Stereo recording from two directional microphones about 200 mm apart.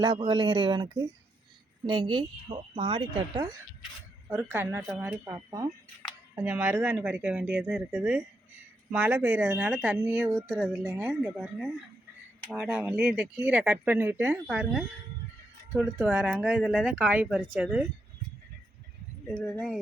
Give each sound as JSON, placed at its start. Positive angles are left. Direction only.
{"t": 0.0, "sound": "speech", "side_deg": -20}
{"t": 4.3, "sound": "speech", "side_deg": -10}
{"t": 19.5, "sound": "speech", "side_deg": 5}